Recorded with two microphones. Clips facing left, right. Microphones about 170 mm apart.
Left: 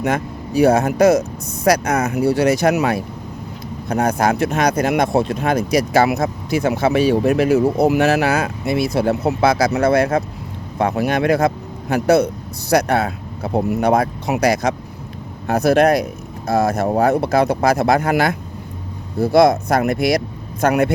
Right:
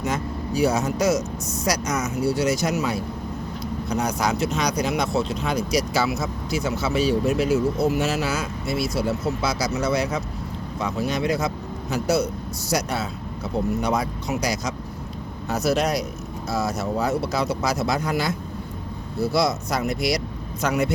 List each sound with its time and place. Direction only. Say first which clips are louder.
0.0 s speech: left 5 dB; 60° left (ahead or behind)